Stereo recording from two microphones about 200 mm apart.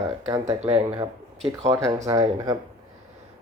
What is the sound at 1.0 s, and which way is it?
Speech, 30° right (ahead or behind).